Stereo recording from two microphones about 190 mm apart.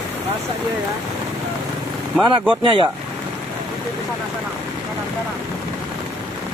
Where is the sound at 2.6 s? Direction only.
25° right (ahead or behind).